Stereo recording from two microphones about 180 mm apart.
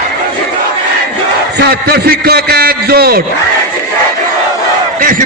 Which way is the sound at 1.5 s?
60° right (ahead or behind).